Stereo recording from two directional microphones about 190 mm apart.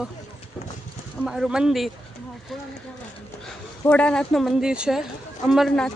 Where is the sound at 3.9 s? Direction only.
5° left (ahead or behind).